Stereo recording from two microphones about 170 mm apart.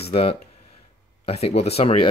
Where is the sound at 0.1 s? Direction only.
35° left (ahead or behind).